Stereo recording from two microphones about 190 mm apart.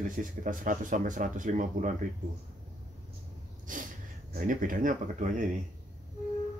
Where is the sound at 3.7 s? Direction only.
45° right (ahead or behind).